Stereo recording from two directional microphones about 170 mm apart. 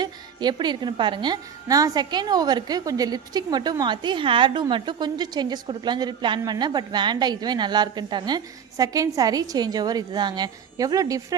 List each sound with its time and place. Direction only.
0.0 s a woman's voice: 25° right (ahead or behind)